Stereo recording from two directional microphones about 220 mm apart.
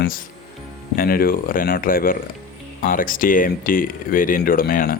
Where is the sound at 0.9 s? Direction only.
40° left (ahead or behind).